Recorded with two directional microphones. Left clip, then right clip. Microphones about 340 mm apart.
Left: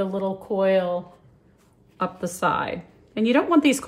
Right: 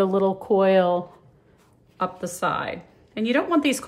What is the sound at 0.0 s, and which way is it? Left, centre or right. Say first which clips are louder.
Speech: right 5 dB; right.